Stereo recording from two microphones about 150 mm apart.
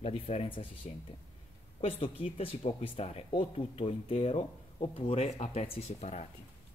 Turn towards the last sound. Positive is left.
turn(degrees=50)  # may be behind; listen again after turning